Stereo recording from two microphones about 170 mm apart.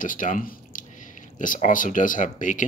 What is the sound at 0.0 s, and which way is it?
Speech, 50° left (ahead or behind).